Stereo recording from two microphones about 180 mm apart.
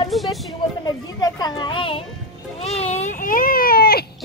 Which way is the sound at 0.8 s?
20° left (ahead or behind).